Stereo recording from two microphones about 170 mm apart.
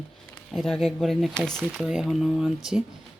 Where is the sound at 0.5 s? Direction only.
Centre (ahead or behind).